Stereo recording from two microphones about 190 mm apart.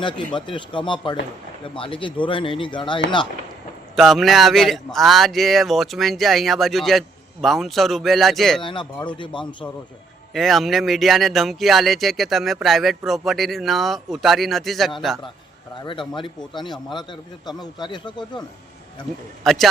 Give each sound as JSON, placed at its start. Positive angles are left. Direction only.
{"t": 0.3, "sound": "speech", "side_deg": 25}
{"t": 3.9, "sound": "speech", "side_deg": 0}
{"t": 8.6, "sound": "speech", "side_deg": 25}
{"t": 10.3, "sound": "speech", "side_deg": 0}
{"t": 15.8, "sound": "speech", "side_deg": 25}
{"t": 19.4, "sound": "speech", "side_deg": 0}